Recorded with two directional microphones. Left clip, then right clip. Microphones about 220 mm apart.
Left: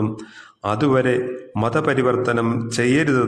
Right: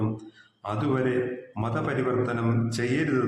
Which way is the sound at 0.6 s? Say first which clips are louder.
Left 9 dB; 45° left (ahead or behind).